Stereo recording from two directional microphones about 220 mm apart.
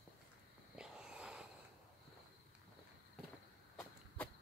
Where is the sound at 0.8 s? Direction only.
5° right (ahead or behind).